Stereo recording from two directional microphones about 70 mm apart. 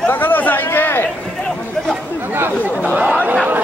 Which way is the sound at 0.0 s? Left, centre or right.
Left.